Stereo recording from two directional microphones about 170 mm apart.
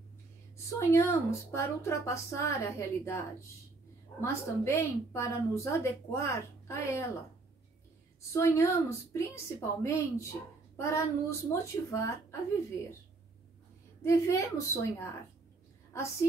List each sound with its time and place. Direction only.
0.7 s a woman's voice: 15° left (ahead or behind)
8.2 s a woman's voice: 15° left (ahead or behind)
14.0 s a woman's voice: 15° left (ahead or behind)